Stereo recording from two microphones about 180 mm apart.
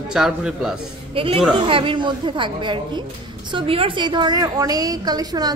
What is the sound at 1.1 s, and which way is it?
A woman's voice, 30° right (ahead or behind).